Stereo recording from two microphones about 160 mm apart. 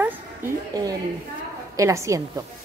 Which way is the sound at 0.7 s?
20° right (ahead or behind).